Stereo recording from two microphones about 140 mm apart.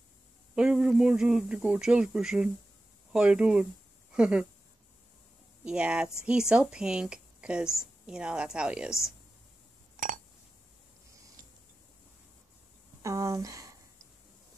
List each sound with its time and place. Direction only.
0.6 s a woman's voice: 5° right (ahead or behind)
5.6 s a woman's voice: 5° right (ahead or behind)
9.9 s a sound: 70° right (ahead or behind)
13.0 s speech: 20° right (ahead or behind)